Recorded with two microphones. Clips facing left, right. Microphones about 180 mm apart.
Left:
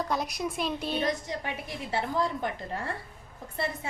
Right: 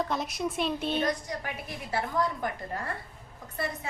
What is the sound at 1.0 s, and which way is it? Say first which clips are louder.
A woman's voice: even; 25° left (ahead or behind).